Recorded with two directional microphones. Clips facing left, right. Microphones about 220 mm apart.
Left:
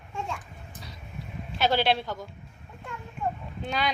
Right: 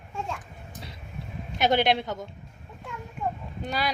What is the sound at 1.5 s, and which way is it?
Speech, 20° right (ahead or behind).